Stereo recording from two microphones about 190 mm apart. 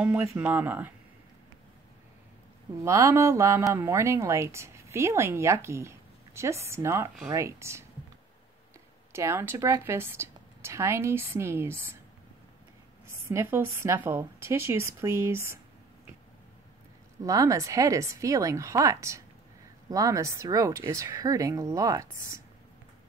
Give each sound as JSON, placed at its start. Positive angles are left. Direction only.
{"t": 0.0, "sound": "speech", "side_deg": -10}
{"t": 2.8, "sound": "speech", "side_deg": -15}
{"t": 9.1, "sound": "speech", "side_deg": -15}
{"t": 13.0, "sound": "speech", "side_deg": -15}
{"t": 17.2, "sound": "speech", "side_deg": -15}